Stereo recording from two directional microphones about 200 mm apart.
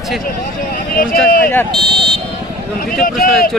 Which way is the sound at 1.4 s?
5° left (ahead or behind).